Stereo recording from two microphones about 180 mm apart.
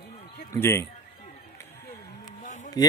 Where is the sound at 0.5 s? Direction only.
15° left (ahead or behind).